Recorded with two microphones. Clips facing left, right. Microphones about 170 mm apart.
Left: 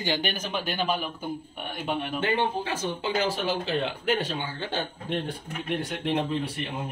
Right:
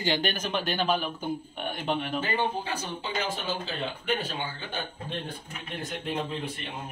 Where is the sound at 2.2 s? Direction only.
90° left.